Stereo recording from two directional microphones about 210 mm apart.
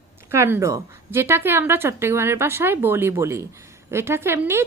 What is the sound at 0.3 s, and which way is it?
A woman's voice, 10° right (ahead or behind).